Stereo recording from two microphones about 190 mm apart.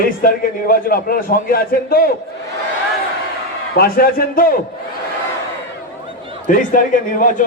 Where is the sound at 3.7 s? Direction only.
50° left (ahead or behind).